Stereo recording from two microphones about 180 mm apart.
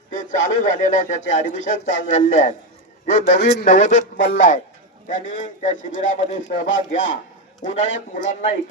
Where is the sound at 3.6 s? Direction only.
90° left.